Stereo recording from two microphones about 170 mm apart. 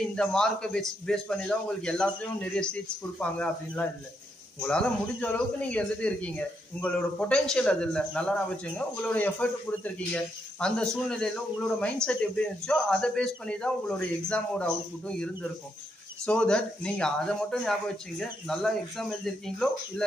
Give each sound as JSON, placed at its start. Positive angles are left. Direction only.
{"t": 0.1, "sound": "a man's voice", "side_deg": 5}